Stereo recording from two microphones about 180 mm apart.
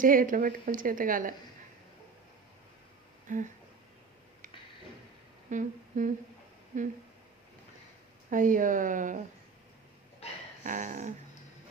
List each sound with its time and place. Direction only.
0.0 s speech: 50° right (ahead or behind)
3.3 s speech: 45° right (ahead or behind)
5.5 s humming: 45° right (ahead or behind)
8.3 s speech: 50° right (ahead or behind)
10.6 s speech: 45° right (ahead or behind)